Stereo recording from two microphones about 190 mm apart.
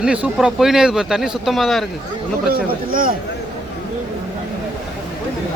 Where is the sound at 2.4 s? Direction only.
50° right (ahead or behind).